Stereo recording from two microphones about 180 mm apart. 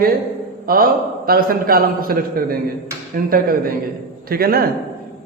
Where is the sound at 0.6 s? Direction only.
55° right (ahead or behind).